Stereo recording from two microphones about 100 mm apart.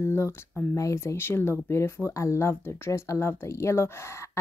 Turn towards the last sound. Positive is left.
turn(degrees=25)  # may be behind; listen again after turning